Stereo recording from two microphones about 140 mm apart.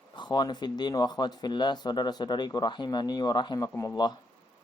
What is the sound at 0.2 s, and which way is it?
Speech, 30° left (ahead or behind).